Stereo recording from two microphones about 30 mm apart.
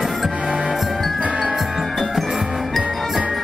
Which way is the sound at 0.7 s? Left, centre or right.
Centre.